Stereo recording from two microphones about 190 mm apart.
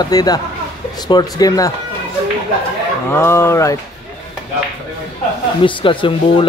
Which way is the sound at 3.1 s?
15° left (ahead or behind).